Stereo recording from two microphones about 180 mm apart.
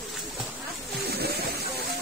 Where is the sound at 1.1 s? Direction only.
60° right (ahead or behind).